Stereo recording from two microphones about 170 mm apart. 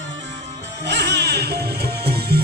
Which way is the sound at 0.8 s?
85° right.